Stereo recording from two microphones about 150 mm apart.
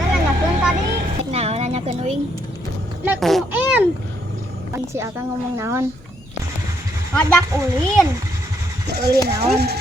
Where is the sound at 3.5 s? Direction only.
10° right (ahead or behind).